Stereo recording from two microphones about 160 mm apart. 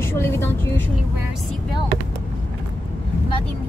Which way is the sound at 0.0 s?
15° left (ahead or behind).